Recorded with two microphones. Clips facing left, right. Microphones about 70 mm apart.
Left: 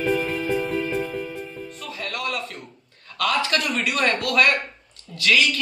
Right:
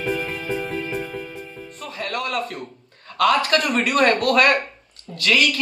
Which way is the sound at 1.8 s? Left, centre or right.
Right.